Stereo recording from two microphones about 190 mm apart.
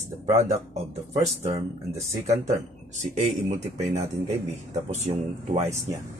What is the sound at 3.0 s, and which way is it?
Speech, 40° right (ahead or behind).